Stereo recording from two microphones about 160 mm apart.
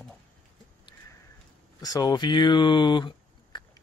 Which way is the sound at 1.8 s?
25° left (ahead or behind).